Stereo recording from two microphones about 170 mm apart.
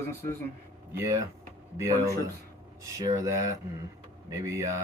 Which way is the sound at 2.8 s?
20° right (ahead or behind).